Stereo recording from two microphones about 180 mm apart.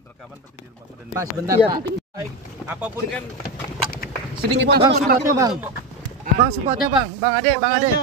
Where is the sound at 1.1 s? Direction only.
20° right (ahead or behind).